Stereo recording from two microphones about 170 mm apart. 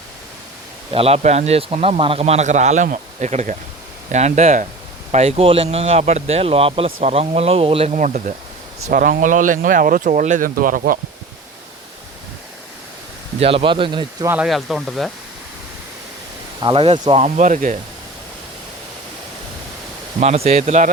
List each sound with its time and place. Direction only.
0.9 s speech: 35° right (ahead or behind); by 11.0 s 55° right (ahead or behind)
13.4 s speech: 35° right (ahead or behind)
14.3 s speech: 5° right (ahead or behind)
16.6 s speech: 30° right (ahead or behind); by 17.7 s 50° right (ahead or behind)
20.1 s speech: 40° right (ahead or behind)